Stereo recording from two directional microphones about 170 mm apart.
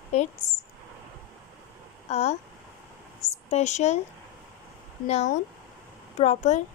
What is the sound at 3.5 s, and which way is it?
Speech, 40° left (ahead or behind).